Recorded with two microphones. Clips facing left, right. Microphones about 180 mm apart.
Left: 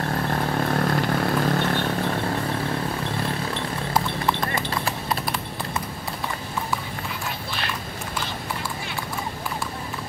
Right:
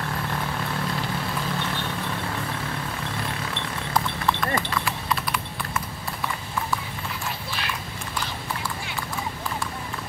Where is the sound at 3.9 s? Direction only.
25° left (ahead or behind).